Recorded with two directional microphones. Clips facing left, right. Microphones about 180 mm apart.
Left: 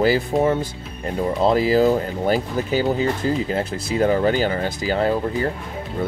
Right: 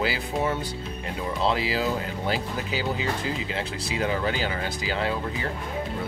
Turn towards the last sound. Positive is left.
turn(degrees=40)  # may be behind; listen again after turning